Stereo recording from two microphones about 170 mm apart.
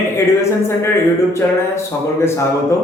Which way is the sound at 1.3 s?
15° left (ahead or behind).